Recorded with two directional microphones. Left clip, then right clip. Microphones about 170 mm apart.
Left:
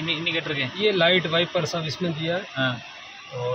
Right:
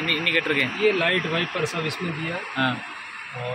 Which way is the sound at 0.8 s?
20° left (ahead or behind).